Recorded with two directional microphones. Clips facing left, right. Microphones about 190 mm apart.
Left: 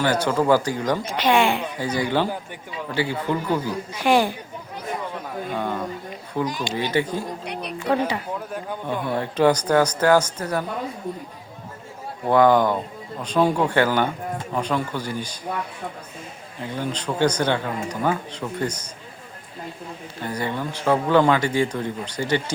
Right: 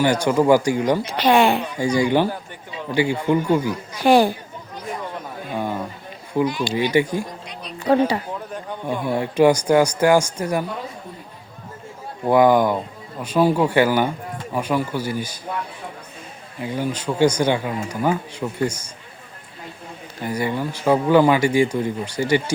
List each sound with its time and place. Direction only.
0.0 s speech: 10° right (ahead or behind)
1.0 s speech: 40° right (ahead or behind)
1.8 s speech: 15° right (ahead or behind)
4.0 s speech: 35° right (ahead or behind)
6.4 s speech: 45° left (ahead or behind)
6.9 s speech: 10° right (ahead or behind)
7.4 s music: 65° left (ahead or behind)
7.8 s speech: 35° right (ahead or behind)
8.9 s speech: 10° right (ahead or behind)
12.2 s speech: 10° right (ahead or behind)
16.6 s speech: 10° right (ahead or behind)
20.2 s speech: 10° right (ahead or behind)